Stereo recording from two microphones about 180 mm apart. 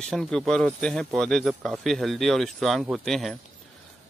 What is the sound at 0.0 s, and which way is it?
Speech, centre (ahead or behind).